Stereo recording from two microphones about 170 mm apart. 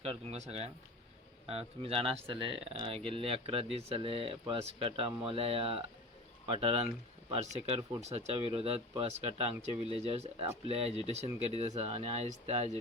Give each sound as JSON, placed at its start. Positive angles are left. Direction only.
{"t": 0.0, "sound": "speech", "side_deg": -35}